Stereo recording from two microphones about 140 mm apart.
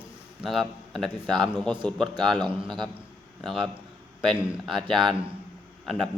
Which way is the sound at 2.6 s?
35° right (ahead or behind).